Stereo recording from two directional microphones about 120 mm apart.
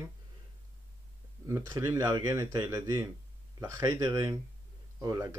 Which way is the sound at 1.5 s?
30° right (ahead or behind).